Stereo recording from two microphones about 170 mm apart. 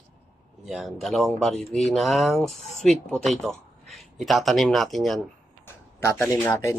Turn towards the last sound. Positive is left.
turn(degrees=20)  # may be behind; listen again after turning